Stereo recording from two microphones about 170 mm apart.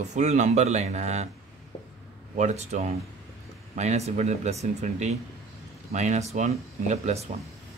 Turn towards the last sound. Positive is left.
turn(degrees=-40)  # may be behind; listen again after turning